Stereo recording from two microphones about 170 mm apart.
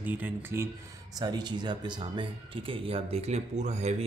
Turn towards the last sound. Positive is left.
turn(degrees=-40)  # may be behind; listen again after turning